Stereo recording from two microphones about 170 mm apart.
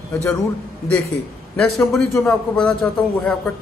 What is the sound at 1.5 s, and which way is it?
Speech, 5° left (ahead or behind).